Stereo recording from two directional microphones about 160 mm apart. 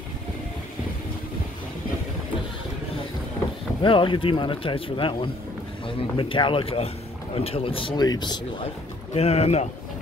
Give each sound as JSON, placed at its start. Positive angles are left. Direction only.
{"t": 3.8, "sound": "speech", "side_deg": 30}
{"t": 9.1, "sound": "speech", "side_deg": 40}